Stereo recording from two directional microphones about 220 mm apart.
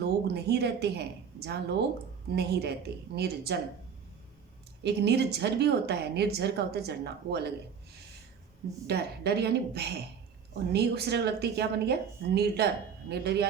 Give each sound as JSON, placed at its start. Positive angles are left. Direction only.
{"t": 0.0, "sound": "a woman's voice", "side_deg": -50}
{"t": 4.8, "sound": "speech", "side_deg": -50}
{"t": 8.9, "sound": "speech", "side_deg": -45}